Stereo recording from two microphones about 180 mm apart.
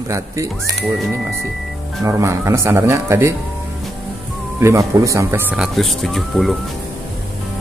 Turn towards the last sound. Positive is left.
turn(degrees=0)  # may be behind; listen again after turning